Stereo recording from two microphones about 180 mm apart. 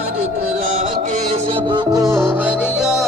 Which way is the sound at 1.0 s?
40° right (ahead or behind).